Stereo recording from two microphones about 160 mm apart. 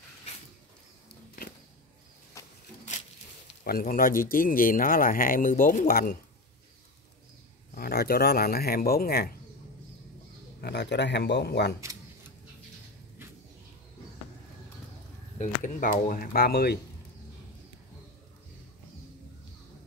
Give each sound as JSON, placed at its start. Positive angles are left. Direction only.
{"t": 2.4, "sound": "a sound", "side_deg": 20}
{"t": 3.6, "sound": "speech", "side_deg": 65}
{"t": 7.7, "sound": "speech", "side_deg": 75}
{"t": 10.6, "sound": "speech", "side_deg": 90}
{"t": 15.3, "sound": "speech", "side_deg": 50}